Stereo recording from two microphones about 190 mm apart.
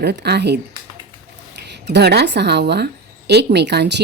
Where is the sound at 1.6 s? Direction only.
65° right (ahead or behind).